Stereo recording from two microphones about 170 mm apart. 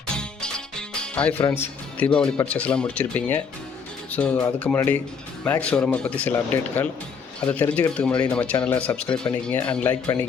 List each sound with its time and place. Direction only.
0.2 s music: 5° left (ahead or behind)
1.4 s speech: 15° left (ahead or behind)